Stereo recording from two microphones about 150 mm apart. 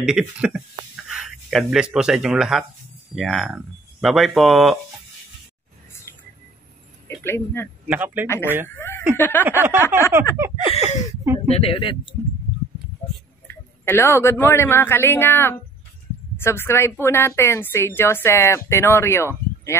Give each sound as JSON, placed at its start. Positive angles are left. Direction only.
{"t": 0.0, "sound": "speech", "side_deg": -5}
{"t": 7.2, "sound": "speech", "side_deg": 15}
{"t": 7.9, "sound": "a sound", "side_deg": -10}
{"t": 8.7, "sound": "chuckle", "side_deg": 15}
{"t": 9.1, "sound": "speech", "side_deg": 15}
{"t": 9.4, "sound": "a sound", "side_deg": -15}
{"t": 10.7, "sound": "speech", "side_deg": 50}
{"t": 11.3, "sound": "speech", "side_deg": 40}
{"t": 13.5, "sound": "a sound", "side_deg": 15}
{"t": 14.4, "sound": "speech", "side_deg": 15}